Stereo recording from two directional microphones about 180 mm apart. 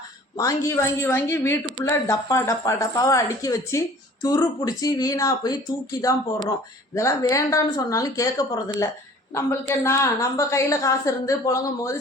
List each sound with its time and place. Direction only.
0.3 s a woman's voice: 15° left (ahead or behind)